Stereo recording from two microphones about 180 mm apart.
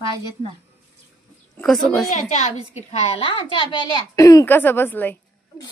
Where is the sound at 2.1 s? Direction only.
35° left (ahead or behind); by 5.2 s 10° left (ahead or behind).